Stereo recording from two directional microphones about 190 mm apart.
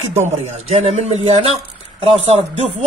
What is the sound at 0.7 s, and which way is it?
A man's voice, 30° right (ahead or behind).